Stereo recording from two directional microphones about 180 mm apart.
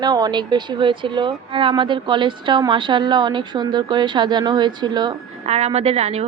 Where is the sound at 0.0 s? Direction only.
25° right (ahead or behind).